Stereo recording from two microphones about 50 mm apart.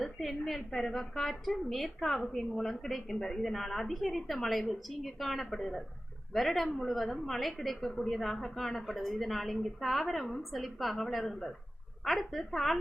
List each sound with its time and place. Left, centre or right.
0.0 s a woman's voice: centre